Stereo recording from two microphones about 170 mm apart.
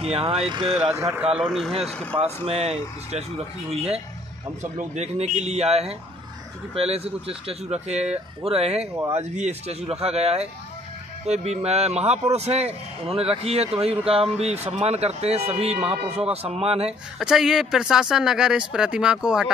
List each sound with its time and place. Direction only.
0.0 s a man's voice: 35° right (ahead or behind)
0.8 s speech: 20° right (ahead or behind)
1.3 s speech: 5° right (ahead or behind)
1.9 s speech: 10° left (ahead or behind)
2.1 s a man's voice: 35° right (ahead or behind)
4.7 s a man's voice: 40° right (ahead or behind)
17.2 s speech: 5° right (ahead or behind)